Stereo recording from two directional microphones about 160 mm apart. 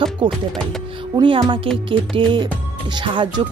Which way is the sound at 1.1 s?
30° right (ahead or behind).